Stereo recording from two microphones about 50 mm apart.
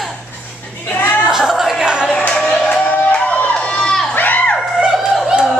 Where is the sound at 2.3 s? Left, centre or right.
Left.